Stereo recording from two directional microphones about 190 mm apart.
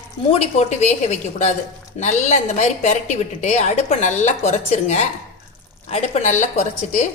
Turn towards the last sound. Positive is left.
turn(degrees=40)  # may be behind; listen again after turning